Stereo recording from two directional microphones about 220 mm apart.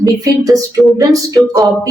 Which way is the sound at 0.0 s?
15° right (ahead or behind).